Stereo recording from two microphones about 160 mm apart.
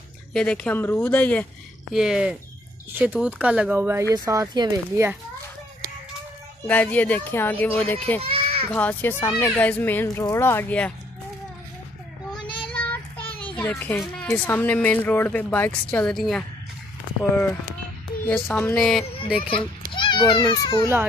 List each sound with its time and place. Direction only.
0.3 s speech: 5° left (ahead or behind)
1.9 s speech: centre (ahead or behind)
4.1 s speech: 25° right (ahead or behind)
6.7 s speech: 10° left (ahead or behind)
8.2 s children playing: 35° right (ahead or behind)
8.7 s speech: 10° left (ahead or behind)
12.6 s child singing: 10° left (ahead or behind)
13.6 s speech: 10° left (ahead or behind)
18.2 s speech: 10° left (ahead or behind)
19.3 s a child's voice: 35° left (ahead or behind)